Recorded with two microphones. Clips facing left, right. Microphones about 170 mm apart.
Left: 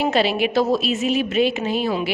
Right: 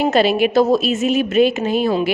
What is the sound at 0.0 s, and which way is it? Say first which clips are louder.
A woman's voice: right 4 dB; 50° right (ahead or behind).